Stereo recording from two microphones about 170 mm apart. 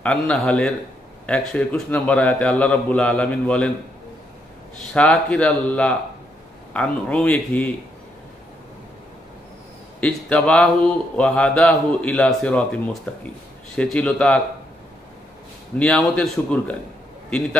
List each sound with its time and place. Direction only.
0.0 s a man's voice: 5° left (ahead or behind)
4.9 s a man's voice: 5° left (ahead or behind)
9.9 s a man's voice: 5° left (ahead or behind)
15.8 s a man's voice: 5° left (ahead or behind)